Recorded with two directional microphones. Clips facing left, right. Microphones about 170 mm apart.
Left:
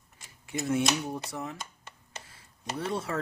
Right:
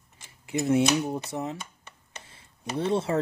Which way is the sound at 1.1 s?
25° right (ahead or behind).